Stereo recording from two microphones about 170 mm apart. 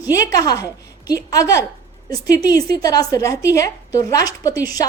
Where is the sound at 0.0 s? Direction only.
20° left (ahead or behind).